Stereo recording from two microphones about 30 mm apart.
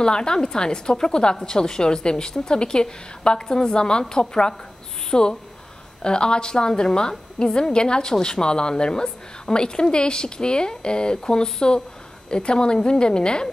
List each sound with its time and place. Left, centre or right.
0.0 s a woman's voice: left